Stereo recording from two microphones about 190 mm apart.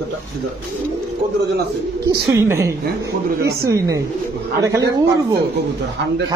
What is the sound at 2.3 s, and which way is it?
Speech, 15° right (ahead or behind).